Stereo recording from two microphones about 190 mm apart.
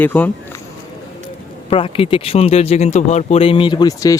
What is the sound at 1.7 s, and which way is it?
Speech, 30° left (ahead or behind).